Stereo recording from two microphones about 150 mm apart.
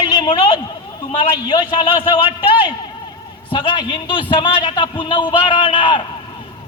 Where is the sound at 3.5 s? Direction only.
30° left (ahead or behind).